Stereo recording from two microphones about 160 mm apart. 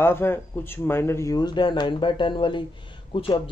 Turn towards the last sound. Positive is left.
turn(degrees=30)  # may be behind; listen again after turning